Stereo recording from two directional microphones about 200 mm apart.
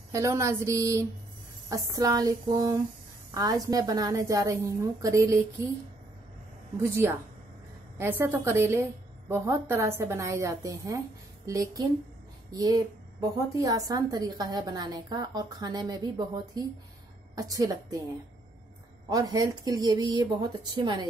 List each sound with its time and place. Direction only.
0.1 s a woman's voice: 15° right (ahead or behind)
6.9 s a woman's voice: 10° right (ahead or behind)
19.0 s a woman's voice: 20° right (ahead or behind)